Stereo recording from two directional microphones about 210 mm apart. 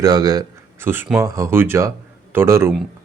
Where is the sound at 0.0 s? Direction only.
20° right (ahead or behind).